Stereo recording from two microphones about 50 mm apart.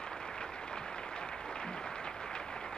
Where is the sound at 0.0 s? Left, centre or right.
Centre.